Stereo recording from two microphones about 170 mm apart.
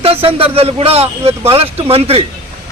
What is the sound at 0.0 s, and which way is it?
A man's voice, 35° right (ahead or behind).